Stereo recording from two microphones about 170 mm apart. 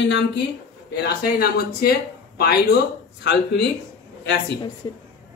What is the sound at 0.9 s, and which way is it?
Speech, 70° left (ahead or behind).